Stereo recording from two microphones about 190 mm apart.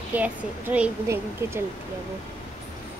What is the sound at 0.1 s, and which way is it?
A woman's voice, 10° right (ahead or behind).